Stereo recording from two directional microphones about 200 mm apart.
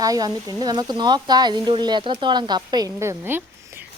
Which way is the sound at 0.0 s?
20° right (ahead or behind).